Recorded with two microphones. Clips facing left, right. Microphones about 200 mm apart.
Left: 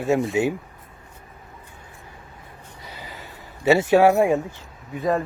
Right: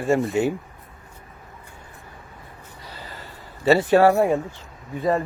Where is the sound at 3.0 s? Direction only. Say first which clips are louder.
Even; 10° left (ahead or behind).